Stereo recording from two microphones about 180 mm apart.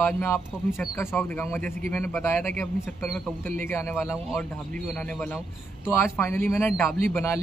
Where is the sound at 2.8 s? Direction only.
Centre (ahead or behind).